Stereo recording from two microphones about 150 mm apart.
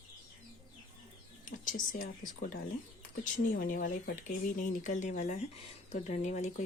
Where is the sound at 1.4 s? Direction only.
65° left (ahead or behind).